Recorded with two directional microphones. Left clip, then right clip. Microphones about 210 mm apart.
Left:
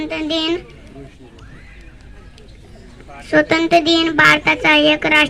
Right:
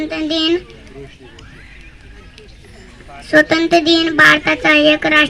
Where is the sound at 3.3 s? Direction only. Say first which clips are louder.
Right 2 dB; 30° left (ahead or behind).